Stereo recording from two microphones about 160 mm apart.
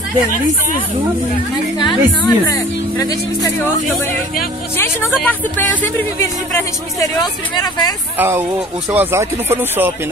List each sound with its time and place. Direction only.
1.9 s speech: 20° left (ahead or behind)
4.7 s speech: 15° left (ahead or behind)
8.2 s speech: 15° right (ahead or behind)